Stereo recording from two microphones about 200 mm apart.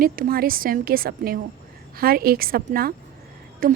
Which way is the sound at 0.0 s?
45° right (ahead or behind).